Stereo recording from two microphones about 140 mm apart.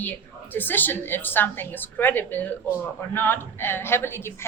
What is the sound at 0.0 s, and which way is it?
A woman's voice, 15° left (ahead or behind).